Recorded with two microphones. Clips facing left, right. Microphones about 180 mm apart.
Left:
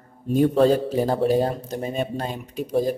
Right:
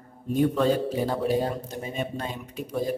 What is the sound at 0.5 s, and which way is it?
A man's voice, 40° left (ahead or behind).